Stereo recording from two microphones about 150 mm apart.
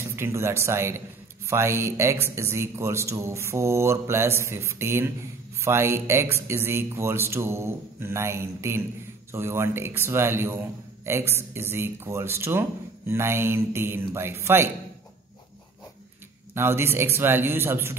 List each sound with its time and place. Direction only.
0.1 s speech: 20° right (ahead or behind)
16.5 s speech: 15° right (ahead or behind)